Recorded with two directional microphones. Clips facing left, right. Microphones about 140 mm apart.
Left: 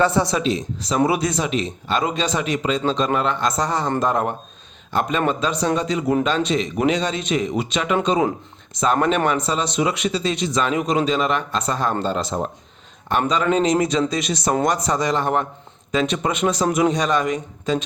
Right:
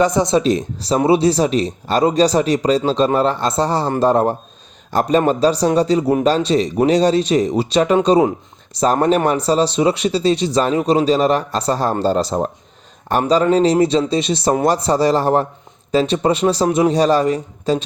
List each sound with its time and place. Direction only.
0.0 s speech: 15° right (ahead or behind)
1.0 s speech: 30° right (ahead or behind)